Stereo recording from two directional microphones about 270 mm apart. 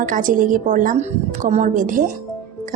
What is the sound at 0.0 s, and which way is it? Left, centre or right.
Speech, right.